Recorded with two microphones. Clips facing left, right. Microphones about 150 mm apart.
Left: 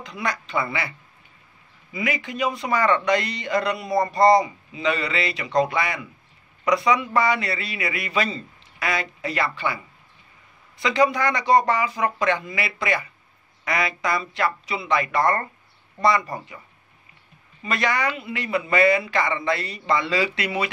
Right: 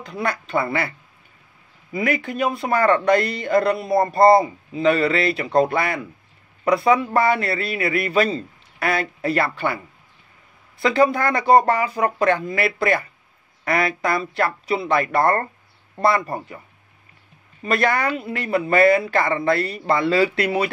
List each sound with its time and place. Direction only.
0.0 s a man's voice: 55° right (ahead or behind)
8.7 s a sound: 55° right (ahead or behind)
9.2 s speech: 55° right (ahead or behind)
10.8 s a man's voice: 50° right (ahead or behind)
17.6 s a man's voice: 50° right (ahead or behind)